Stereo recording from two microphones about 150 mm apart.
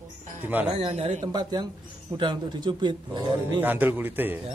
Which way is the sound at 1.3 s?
25° right (ahead or behind).